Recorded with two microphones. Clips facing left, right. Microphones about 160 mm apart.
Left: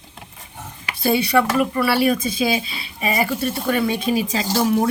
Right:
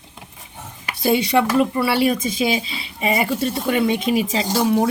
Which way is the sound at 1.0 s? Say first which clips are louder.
Even; 20° right (ahead or behind).